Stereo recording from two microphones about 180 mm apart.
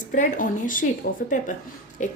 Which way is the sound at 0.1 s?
45° left (ahead or behind).